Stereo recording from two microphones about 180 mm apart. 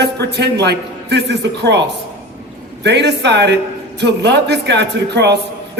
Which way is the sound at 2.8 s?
70° right (ahead or behind).